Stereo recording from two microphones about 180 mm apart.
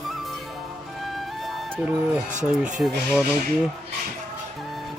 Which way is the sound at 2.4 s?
5° right (ahead or behind).